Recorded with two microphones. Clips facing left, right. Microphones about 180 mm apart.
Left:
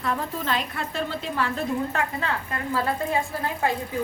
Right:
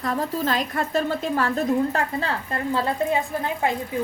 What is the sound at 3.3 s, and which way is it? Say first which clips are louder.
Speech: right 2 dB; 20° right (ahead or behind).